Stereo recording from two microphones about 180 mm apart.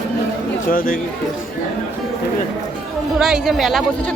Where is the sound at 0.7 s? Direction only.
50° left (ahead or behind).